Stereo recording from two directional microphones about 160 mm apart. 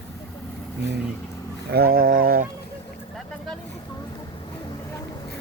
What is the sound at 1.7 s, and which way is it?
Speech, 70° right (ahead or behind).